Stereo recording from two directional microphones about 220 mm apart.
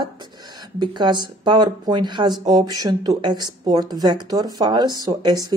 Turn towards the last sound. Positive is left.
turn(degrees=-20)  # may be behind; listen again after turning